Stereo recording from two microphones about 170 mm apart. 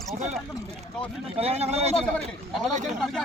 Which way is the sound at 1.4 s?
35° right (ahead or behind).